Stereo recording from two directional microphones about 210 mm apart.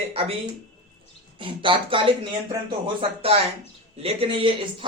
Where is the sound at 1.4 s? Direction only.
25° right (ahead or behind).